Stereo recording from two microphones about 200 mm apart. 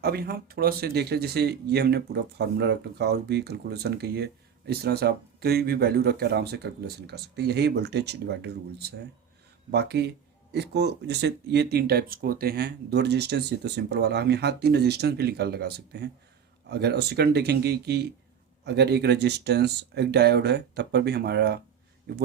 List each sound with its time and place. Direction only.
0.0 s speech: 50° right (ahead or behind)